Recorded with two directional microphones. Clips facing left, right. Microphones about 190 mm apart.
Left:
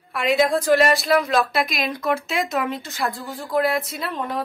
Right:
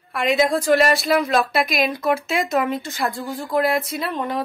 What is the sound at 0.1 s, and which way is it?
A woman's voice, centre (ahead or behind).